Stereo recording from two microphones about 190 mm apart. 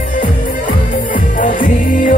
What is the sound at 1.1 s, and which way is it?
Music, 45° left (ahead or behind).